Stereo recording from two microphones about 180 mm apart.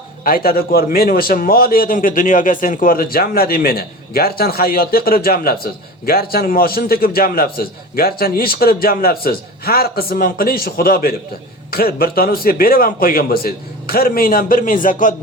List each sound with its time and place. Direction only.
0.3 s a man's voice: 55° left (ahead or behind)